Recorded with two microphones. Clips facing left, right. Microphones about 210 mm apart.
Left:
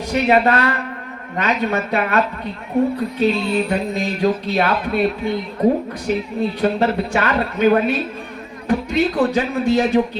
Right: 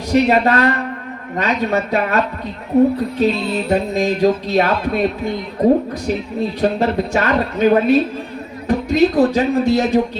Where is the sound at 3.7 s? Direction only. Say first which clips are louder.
Right 4 dB; 40° right (ahead or behind).